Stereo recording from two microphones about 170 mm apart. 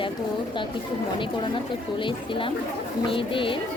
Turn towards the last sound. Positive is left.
turn(degrees=30)  # may be behind; listen again after turning